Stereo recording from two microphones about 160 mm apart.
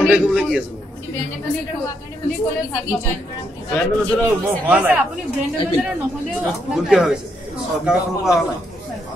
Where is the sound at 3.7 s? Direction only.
10° left (ahead or behind).